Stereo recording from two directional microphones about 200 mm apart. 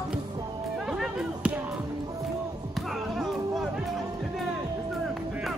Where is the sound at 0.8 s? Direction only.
Centre (ahead or behind).